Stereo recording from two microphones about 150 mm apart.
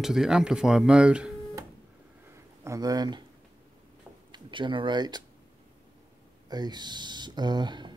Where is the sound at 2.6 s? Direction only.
25° right (ahead or behind).